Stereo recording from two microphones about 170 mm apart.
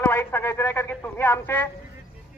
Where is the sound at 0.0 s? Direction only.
15° left (ahead or behind).